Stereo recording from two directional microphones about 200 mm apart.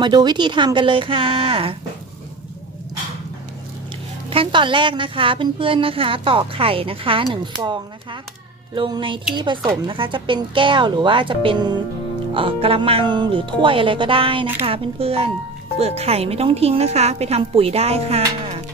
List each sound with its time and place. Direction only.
0.0 s a woman's voice: 20° right (ahead or behind)
4.3 s a woman's voice: 25° right (ahead or behind)